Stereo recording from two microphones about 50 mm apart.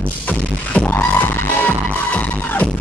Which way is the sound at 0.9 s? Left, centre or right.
Left.